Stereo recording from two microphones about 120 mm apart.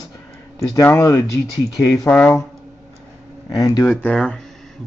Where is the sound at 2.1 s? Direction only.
10° left (ahead or behind).